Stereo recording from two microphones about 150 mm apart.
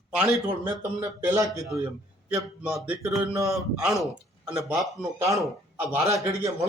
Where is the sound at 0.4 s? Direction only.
25° right (ahead or behind).